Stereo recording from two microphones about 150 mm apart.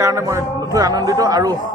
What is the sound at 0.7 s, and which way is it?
Speech, 25° right (ahead or behind).